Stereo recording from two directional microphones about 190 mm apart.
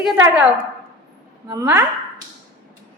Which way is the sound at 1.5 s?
15° right (ahead or behind).